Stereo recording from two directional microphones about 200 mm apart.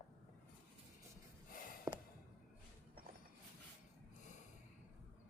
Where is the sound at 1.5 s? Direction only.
45° left (ahead or behind).